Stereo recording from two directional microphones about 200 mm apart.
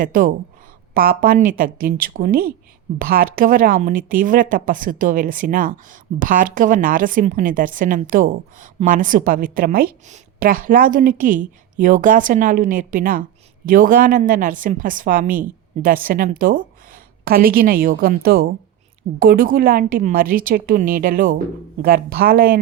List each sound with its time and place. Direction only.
0.0 s a woman's voice: 45° right (ahead or behind)